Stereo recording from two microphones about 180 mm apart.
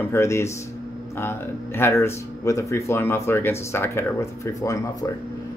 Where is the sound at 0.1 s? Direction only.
15° left (ahead or behind).